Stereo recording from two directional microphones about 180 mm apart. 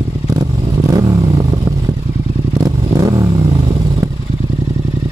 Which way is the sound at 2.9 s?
20° right (ahead or behind).